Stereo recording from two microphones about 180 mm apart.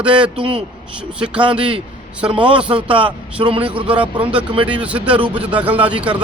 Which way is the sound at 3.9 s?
5° right (ahead or behind).